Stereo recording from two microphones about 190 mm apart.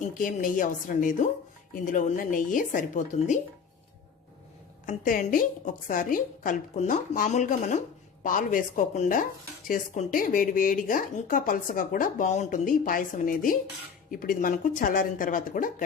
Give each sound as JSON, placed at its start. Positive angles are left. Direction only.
{"t": 0.0, "sound": "speech", "side_deg": 45}
{"t": 4.9, "sound": "speech", "side_deg": 45}